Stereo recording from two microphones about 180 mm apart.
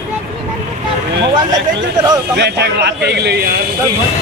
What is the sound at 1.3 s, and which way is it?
Speech, 20° right (ahead or behind).